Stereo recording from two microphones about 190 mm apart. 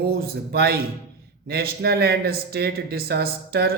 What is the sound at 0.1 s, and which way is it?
Speech, 55° right (ahead or behind).